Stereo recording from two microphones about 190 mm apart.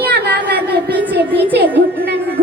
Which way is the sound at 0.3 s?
55° right (ahead or behind).